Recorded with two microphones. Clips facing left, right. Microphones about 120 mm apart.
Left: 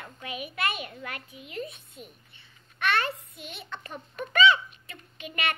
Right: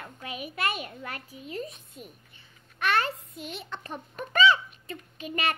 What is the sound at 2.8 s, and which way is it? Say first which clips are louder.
A child's voice: right 1 dB; 40° right (ahead or behind).